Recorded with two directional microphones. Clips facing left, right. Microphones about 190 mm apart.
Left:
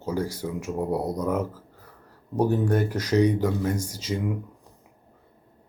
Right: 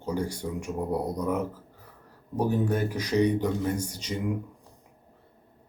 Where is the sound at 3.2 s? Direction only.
10° left (ahead or behind).